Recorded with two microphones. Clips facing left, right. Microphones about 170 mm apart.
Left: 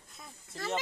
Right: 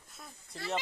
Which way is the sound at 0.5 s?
45° left (ahead or behind).